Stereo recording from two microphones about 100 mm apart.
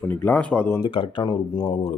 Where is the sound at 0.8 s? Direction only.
50° left (ahead or behind).